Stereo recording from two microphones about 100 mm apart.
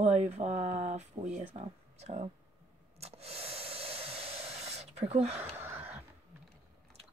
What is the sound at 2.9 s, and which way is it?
Hair dryer, 90° right.